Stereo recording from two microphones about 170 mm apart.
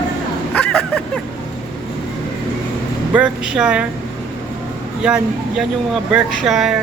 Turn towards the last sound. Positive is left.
turn(degrees=0)  # may be behind; listen again after turning